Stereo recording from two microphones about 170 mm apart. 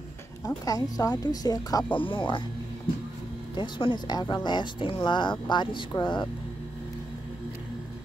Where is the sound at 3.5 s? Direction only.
25° left (ahead or behind).